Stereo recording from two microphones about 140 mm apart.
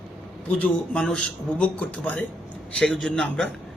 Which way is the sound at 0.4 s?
5° left (ahead or behind).